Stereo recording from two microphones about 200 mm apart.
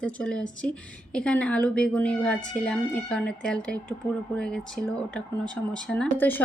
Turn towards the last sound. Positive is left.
turn(degrees=10)  # may be behind; listen again after turning